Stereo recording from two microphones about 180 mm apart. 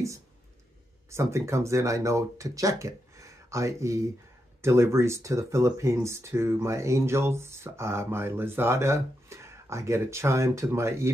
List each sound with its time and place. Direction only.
1.1 s speech: 15° right (ahead or behind)